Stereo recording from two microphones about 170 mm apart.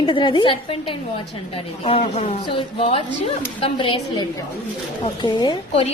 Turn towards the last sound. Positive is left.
turn(degrees=25)  # may be behind; listen again after turning